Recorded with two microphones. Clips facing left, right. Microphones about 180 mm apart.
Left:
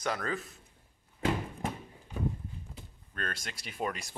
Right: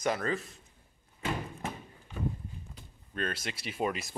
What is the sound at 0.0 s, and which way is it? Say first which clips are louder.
Speech: right 3 dB; 5° right (ahead or behind).